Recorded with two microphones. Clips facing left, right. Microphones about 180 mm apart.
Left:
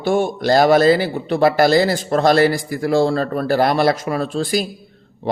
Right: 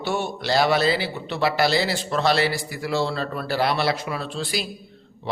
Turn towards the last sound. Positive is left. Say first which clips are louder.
# left 8 dB
turn(degrees=45)  # may be behind; listen again after turning